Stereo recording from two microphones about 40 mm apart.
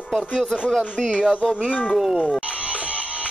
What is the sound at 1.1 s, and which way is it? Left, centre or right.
Speech, right.